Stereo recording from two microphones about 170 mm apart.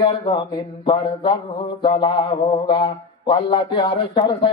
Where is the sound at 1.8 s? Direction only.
30° left (ahead or behind).